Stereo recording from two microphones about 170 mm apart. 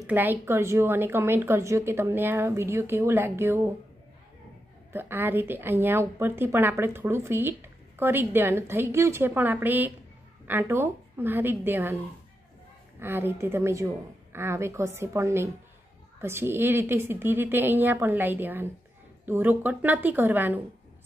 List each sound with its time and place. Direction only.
0.0 s a woman's voice: 10° right (ahead or behind)
4.9 s a woman's voice: 10° right (ahead or behind)
13.0 s a woman's voice: 10° right (ahead or behind)